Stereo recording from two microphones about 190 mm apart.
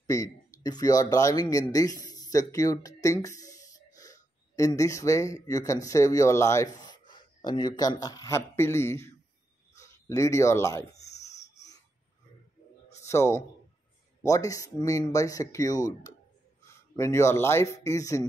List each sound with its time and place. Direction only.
0.0 s speech: 15° left (ahead or behind)
11.2 s wheeze: 35° left (ahead or behind)
13.0 s a man's voice: 15° left (ahead or behind)